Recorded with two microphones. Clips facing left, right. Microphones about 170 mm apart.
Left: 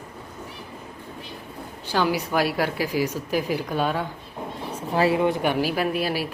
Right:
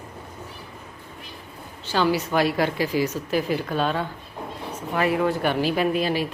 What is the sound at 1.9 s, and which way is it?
Speech, 10° left (ahead or behind).